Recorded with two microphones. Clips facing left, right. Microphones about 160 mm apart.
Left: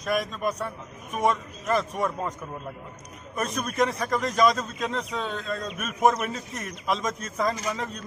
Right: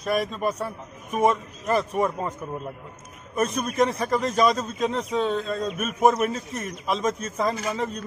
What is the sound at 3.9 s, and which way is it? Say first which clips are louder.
Speech: right 3 dB; 30° right (ahead or behind).